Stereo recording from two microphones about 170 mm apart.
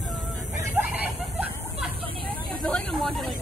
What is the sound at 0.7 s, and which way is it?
Hubbub, 10° right (ahead or behind).